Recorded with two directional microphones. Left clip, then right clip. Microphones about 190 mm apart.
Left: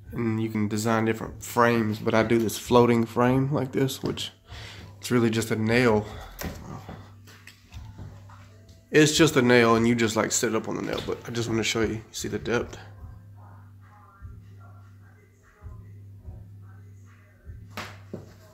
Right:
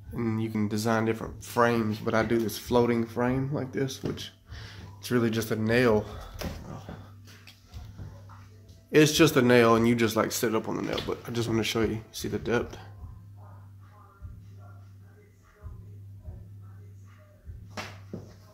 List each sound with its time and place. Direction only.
0.1 s speech: 10° left (ahead or behind)
8.9 s speech: 5° left (ahead or behind)